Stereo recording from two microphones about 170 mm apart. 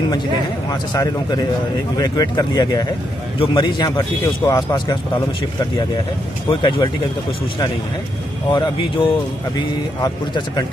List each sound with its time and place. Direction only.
0.7 s speech: 20° left (ahead or behind)
6.5 s speech: 30° left (ahead or behind)
8.5 s speech: 30° left (ahead or behind)